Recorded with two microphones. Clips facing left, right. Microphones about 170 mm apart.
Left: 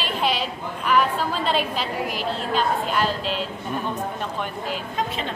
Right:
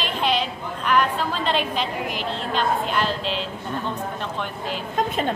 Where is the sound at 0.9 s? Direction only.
5° left (ahead or behind).